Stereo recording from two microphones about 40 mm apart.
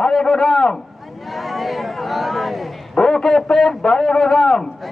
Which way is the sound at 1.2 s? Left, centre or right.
Centre.